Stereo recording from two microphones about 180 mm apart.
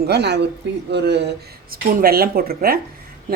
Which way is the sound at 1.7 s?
55° right (ahead or behind).